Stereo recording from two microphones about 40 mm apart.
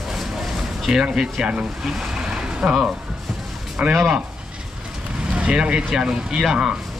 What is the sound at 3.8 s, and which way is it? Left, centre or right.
Speech, right.